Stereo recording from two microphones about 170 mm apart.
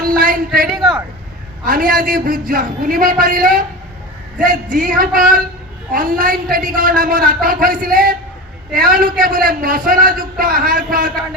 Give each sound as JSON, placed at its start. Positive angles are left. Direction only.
{"t": 0.0, "sound": "a sound", "side_deg": -55}
{"t": 0.7, "sound": "speech", "side_deg": 0}
{"t": 1.6, "sound": "a man's voice", "side_deg": -55}